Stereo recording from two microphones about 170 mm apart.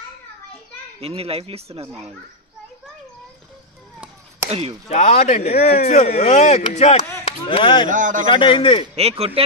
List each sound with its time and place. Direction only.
1.0 s speech: 35° right (ahead or behind)
4.5 s speech: 35° right (ahead or behind)
4.8 s speech: 40° left (ahead or behind)
7.9 s speech: 50° right (ahead or behind)
8.3 s speech: 30° left (ahead or behind)
8.9 s speech: 35° right (ahead or behind)